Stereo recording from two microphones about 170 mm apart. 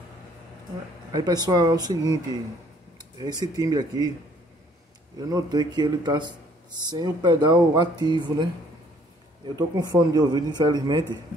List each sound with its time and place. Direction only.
1.1 s speech: 25° right (ahead or behind)
3.2 s speech: 25° right (ahead or behind)
5.3 s speech: 25° right (ahead or behind)
9.6 s speech: 25° right (ahead or behind)